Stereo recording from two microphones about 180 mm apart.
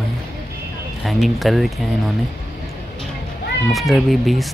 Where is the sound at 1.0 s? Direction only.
Centre (ahead or behind).